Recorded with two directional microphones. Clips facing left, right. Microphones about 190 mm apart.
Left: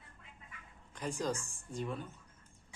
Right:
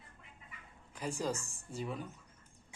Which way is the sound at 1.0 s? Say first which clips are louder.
Even; 10° right (ahead or behind).